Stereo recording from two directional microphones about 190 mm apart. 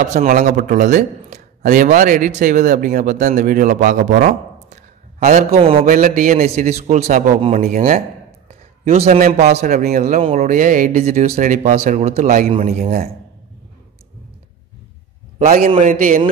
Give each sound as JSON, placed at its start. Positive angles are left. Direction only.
{"t": 0.1, "sound": "speech", "side_deg": -40}
{"t": 5.6, "sound": "speech", "side_deg": -30}
{"t": 5.9, "sound": "speech", "side_deg": -45}
{"t": 8.5, "sound": "a sound", "side_deg": -35}
{"t": 9.2, "sound": "speech", "side_deg": -35}
{"t": 15.3, "sound": "a man's voice", "side_deg": -45}